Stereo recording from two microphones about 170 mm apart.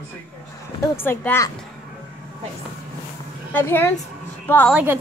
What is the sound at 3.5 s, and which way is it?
A woman's voice, 10° left (ahead or behind).